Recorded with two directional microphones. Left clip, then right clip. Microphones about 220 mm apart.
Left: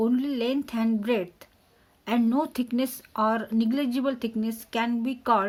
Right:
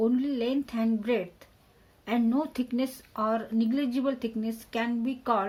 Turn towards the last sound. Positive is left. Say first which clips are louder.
# left 4 dB
turn(degrees=50)  # may be behind; listen again after turning